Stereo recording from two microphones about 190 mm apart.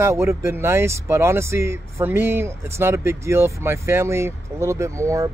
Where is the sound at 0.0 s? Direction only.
15° right (ahead or behind).